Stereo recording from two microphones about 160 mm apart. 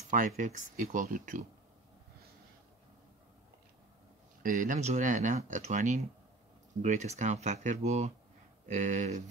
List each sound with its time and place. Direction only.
0.0 s a sound: 50° right (ahead or behind)
0.4 s speech: 50° right (ahead or behind)
4.4 s speech: 55° right (ahead or behind)